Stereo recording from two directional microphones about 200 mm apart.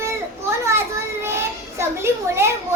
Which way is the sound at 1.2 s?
15° right (ahead or behind).